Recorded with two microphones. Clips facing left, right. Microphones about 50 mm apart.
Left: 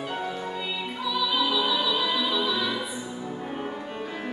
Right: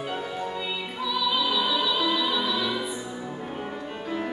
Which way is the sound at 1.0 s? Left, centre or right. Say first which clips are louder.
Even; centre.